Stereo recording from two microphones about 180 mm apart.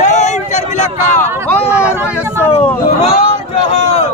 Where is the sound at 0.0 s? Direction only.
40° left (ahead or behind).